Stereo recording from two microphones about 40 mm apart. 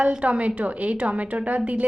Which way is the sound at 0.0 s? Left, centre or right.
Right.